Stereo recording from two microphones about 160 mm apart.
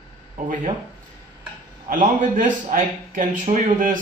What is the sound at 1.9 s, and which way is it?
Speech, 55° right (ahead or behind).